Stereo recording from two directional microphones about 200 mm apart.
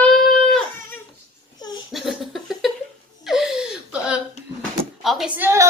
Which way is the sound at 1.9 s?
Centre (ahead or behind).